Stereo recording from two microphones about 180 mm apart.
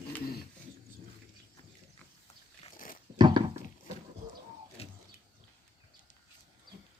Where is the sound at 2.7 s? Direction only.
50° left (ahead or behind).